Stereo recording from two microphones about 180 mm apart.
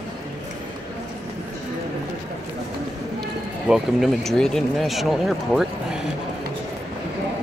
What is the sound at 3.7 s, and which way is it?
Speech, centre (ahead or behind).